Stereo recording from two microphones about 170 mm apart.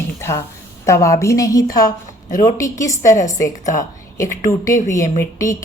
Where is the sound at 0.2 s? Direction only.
15° left (ahead or behind).